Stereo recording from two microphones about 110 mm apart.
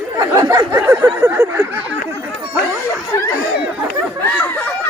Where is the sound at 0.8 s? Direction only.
20° right (ahead or behind).